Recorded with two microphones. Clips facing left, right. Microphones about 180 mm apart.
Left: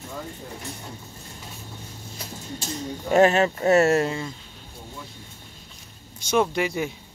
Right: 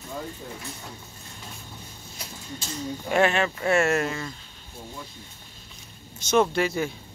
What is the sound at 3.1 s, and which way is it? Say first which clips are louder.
Speech: left 5 dB; 40° left (ahead or behind).